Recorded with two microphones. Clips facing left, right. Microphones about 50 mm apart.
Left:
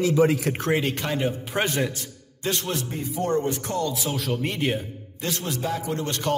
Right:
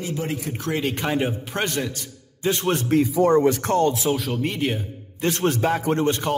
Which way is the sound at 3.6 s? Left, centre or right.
Right.